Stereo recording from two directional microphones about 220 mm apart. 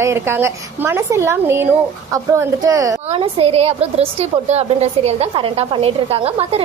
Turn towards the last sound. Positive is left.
turn(degrees=-25)  # may be behind; listen again after turning